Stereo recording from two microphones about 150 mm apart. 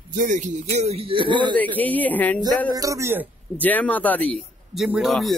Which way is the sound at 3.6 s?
10° left (ahead or behind).